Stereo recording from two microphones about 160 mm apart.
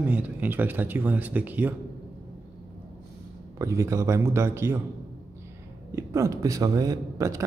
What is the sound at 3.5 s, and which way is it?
A man's voice, 20° right (ahead or behind).